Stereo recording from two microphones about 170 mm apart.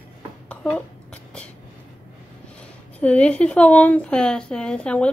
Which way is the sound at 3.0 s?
5° left (ahead or behind).